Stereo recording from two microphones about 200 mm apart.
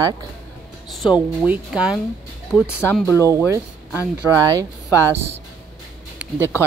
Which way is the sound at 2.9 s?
10° left (ahead or behind).